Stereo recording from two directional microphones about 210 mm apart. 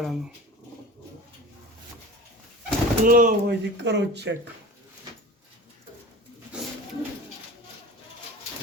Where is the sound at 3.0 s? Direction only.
40° right (ahead or behind).